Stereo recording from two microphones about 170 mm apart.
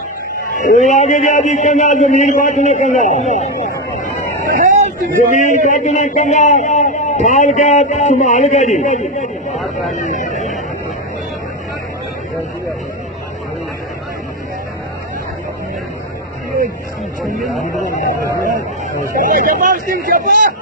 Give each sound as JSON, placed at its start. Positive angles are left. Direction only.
{"t": 0.6, "sound": "speech", "side_deg": 45}
{"t": 4.4, "sound": "vehicle", "side_deg": -55}
{"t": 5.3, "sound": "speech", "side_deg": 45}
{"t": 9.6, "sound": "vehicle", "side_deg": 0}
{"t": 9.9, "sound": "a sound", "side_deg": 45}
{"t": 17.4, "sound": "speech", "side_deg": 0}
{"t": 19.1, "sound": "speech", "side_deg": -50}